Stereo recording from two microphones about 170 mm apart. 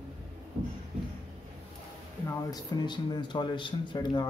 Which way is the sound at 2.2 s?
25° left (ahead or behind).